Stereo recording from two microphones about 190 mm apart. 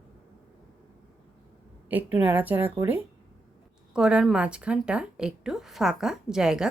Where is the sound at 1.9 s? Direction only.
10° right (ahead or behind).